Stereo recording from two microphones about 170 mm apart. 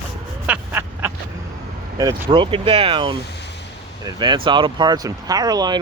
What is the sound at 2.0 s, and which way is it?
Speech, 20° right (ahead or behind).